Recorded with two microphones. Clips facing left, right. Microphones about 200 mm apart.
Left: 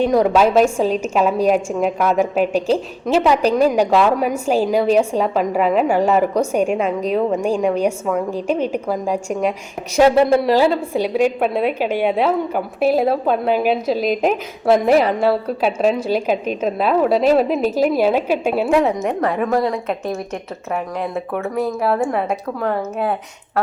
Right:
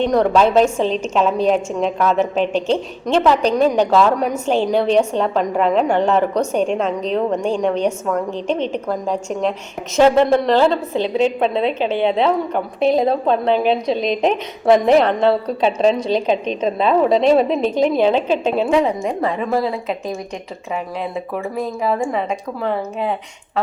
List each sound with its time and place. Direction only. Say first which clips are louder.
0.0 s a woman's voice: even; 5° left (ahead or behind)